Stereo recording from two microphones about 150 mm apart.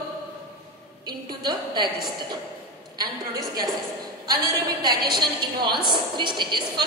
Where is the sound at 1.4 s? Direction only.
30° right (ahead or behind).